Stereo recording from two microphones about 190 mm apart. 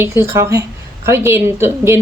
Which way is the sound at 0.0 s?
15° right (ahead or behind).